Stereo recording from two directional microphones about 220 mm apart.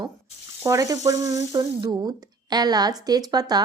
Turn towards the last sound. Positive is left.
turn(degrees=-20)  # may be behind; listen again after turning